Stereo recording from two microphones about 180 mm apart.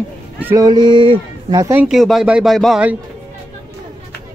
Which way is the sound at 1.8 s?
Centre (ahead or behind).